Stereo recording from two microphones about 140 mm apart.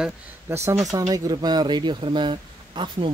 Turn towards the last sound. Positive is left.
turn(degrees=-35)  # may be behind; listen again after turning